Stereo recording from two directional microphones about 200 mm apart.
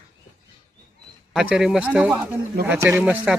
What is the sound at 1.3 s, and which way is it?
Speech, 5° right (ahead or behind).